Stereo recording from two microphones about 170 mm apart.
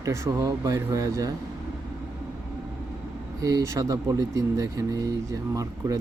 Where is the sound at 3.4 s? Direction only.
20° right (ahead or behind).